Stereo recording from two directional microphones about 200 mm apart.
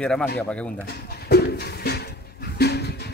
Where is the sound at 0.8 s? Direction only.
55° left (ahead or behind).